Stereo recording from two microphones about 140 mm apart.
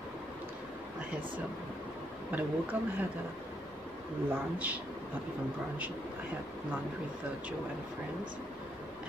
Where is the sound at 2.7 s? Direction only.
15° right (ahead or behind).